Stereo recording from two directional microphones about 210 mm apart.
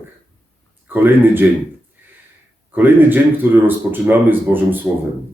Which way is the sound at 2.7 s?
10° right (ahead or behind).